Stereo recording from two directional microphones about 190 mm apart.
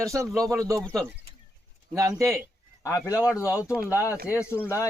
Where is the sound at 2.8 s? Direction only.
15° left (ahead or behind).